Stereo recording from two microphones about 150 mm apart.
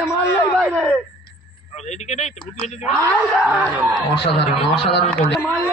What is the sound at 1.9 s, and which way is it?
Speech, 50° left (ahead or behind).